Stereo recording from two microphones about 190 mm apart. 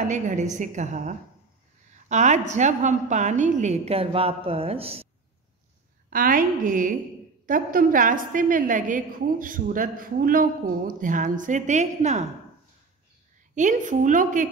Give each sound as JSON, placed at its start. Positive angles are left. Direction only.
{"t": 0.1, "sound": "a woman's voice", "side_deg": -40}
{"t": 6.0, "sound": "a woman's voice", "side_deg": -50}
{"t": 13.6, "sound": "a woman's voice", "side_deg": -40}